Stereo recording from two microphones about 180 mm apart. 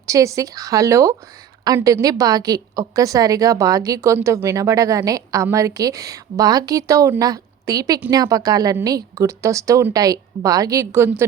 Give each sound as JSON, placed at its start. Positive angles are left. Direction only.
{"t": 0.1, "sound": "a woman's voice", "side_deg": -20}